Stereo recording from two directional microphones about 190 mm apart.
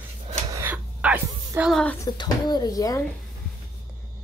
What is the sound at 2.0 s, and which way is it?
A child's voice, 20° left (ahead or behind).